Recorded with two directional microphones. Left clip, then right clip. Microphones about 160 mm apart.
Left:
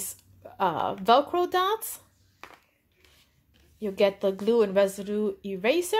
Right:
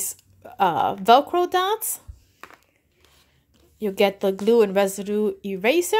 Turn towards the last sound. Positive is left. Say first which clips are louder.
# right 5 dB
turn(degrees=-35)  # may be behind; listen again after turning